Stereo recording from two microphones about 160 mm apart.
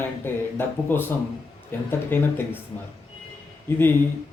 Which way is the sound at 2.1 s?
15° left (ahead or behind).